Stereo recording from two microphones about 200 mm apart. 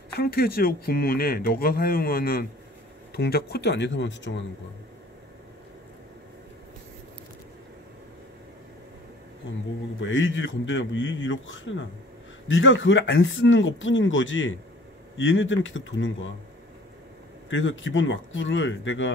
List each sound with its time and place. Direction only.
0.2 s speech: 50° left (ahead or behind)
9.9 s speech: 70° left (ahead or behind)
17.5 s speech: 70° left (ahead or behind)